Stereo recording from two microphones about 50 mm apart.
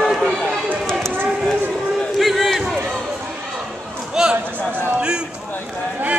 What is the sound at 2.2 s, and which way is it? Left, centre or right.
Crowd, centre.